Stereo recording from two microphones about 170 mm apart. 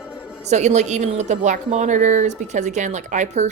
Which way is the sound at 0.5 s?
40° right (ahead or behind).